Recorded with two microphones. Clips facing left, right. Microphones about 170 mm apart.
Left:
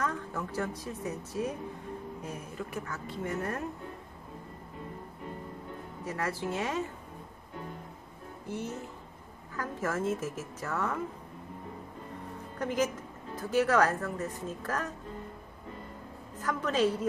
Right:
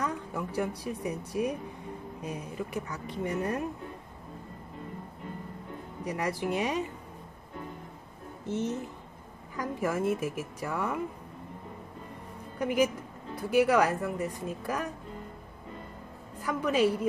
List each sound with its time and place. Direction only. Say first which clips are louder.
0.0 s a woman's voice: right 1 dB; 15° right (ahead or behind)
6.0 s speech: right 3 dB; 15° right (ahead or behind)
8.5 s a child's voice: right 5 dB; 20° right (ahead or behind)
12.5 s speech: right 4 dB; 10° right (ahead or behind)
16.3 s a woman's voice: right 2 dB; 10° right (ahead or behind)